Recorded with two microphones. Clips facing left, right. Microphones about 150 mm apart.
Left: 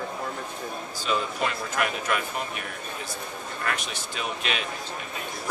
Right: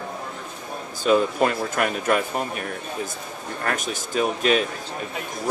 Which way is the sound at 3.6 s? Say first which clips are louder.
Right 5 dB; 45° right (ahead or behind).